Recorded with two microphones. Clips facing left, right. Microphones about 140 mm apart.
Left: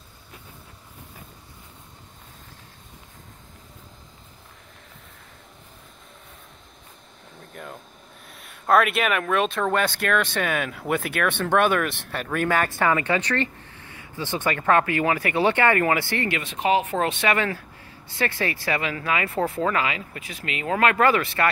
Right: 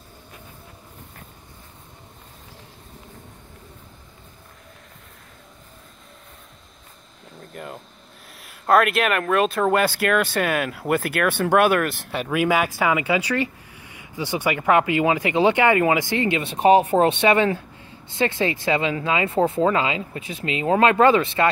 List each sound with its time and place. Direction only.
7.5 s speech: 5° right (ahead or behind); by 21.5 s 20° right (ahead or behind)